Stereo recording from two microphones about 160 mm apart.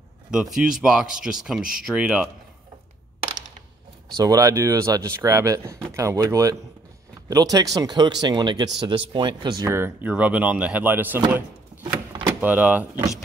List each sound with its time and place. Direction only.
0.3 s speech: 5° right (ahead or behind)
4.2 s speech: 20° right (ahead or behind)
11.8 s power windows: 30° right (ahead or behind)
12.4 s speech: 10° right (ahead or behind)